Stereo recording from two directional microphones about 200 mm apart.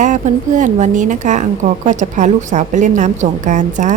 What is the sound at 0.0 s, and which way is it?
A woman's voice, 40° right (ahead or behind).